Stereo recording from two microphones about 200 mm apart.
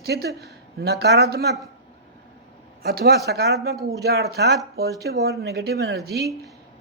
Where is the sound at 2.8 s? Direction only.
50° right (ahead or behind).